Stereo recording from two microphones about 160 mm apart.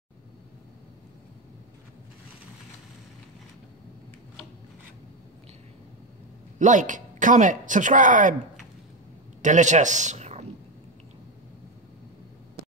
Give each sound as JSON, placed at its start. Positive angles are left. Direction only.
{"t": 6.6, "sound": "speech", "side_deg": -50}
{"t": 9.4, "sound": "a man's voice", "side_deg": -50}